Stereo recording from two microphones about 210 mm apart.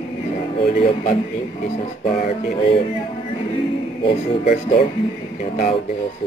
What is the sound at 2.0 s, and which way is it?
Speech, 30° left (ahead or behind).